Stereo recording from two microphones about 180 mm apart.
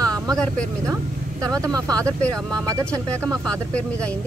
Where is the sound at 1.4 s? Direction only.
20° right (ahead or behind).